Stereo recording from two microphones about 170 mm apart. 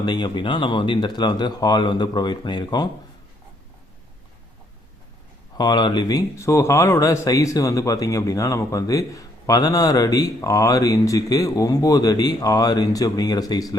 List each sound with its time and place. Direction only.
0.0 s speech: 25° left (ahead or behind)
5.5 s speech: 25° left (ahead or behind)